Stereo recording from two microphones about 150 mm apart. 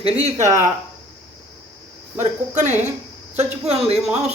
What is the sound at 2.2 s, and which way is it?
Speech, 50° right (ahead or behind).